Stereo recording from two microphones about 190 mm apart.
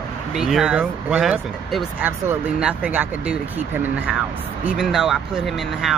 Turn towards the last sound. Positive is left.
turn(degrees=0)  # may be behind; listen again after turning